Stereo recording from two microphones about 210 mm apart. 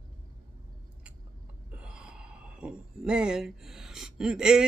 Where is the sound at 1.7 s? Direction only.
5° right (ahead or behind).